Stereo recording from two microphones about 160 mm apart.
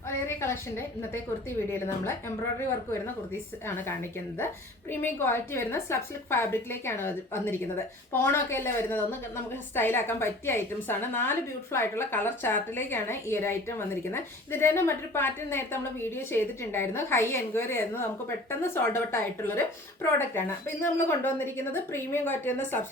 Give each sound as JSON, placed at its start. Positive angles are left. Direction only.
{"t": 0.3, "sound": "a woman's voice", "side_deg": 15}
{"t": 4.9, "sound": "a woman's voice", "side_deg": 15}